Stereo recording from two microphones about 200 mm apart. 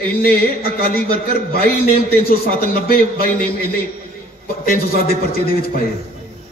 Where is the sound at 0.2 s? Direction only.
50° left (ahead or behind).